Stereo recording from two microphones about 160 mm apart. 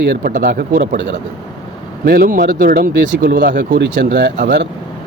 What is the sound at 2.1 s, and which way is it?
Speech, 70° right (ahead or behind).